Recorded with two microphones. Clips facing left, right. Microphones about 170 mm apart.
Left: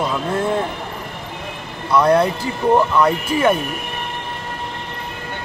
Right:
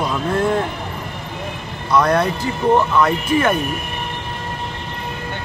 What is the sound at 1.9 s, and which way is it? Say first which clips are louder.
Speech: left 2 dB; 10° left (ahead or behind).